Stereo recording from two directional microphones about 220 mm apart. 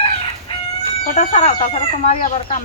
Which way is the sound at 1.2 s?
30° left (ahead or behind).